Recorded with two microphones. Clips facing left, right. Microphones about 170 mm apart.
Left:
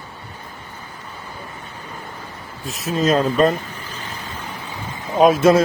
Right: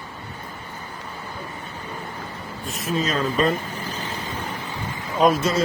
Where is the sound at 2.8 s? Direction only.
45° left (ahead or behind).